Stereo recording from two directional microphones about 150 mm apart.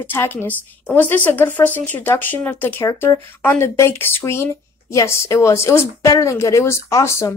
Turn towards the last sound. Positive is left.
turn(degrees=20)  # may be behind; listen again after turning